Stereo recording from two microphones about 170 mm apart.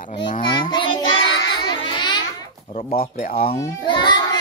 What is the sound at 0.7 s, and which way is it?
Child singing, 30° left (ahead or behind).